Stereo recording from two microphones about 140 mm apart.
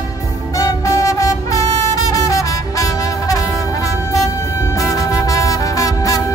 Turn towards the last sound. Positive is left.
turn(degrees=25)  # may be behind; listen again after turning